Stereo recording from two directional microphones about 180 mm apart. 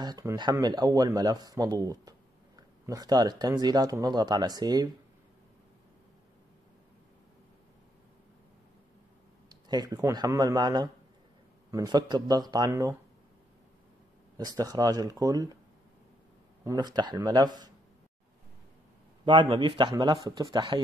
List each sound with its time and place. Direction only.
0.0 s speech: 20° right (ahead or behind)
9.5 s a sound: 20° right (ahead or behind)
10.1 s speech: 20° right (ahead or behind)
14.3 s speech: 20° right (ahead or behind)
16.6 s speech: 20° right (ahead or behind)
19.2 s speech: 25° right (ahead or behind)